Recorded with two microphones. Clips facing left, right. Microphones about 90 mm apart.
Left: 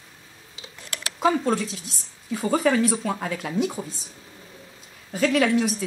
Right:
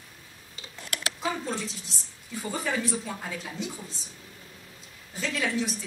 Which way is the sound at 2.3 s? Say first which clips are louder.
Left 10 dB; 70° left (ahead or behind).